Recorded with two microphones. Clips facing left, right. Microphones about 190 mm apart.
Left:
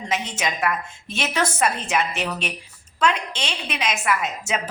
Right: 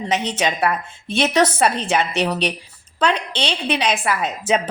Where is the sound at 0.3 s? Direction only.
35° right (ahead or behind).